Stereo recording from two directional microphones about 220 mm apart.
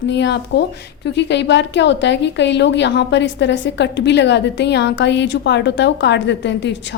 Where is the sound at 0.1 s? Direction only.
55° left (ahead or behind).